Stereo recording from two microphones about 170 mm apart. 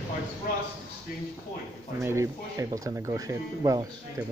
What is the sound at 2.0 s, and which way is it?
Speech, 15° right (ahead or behind).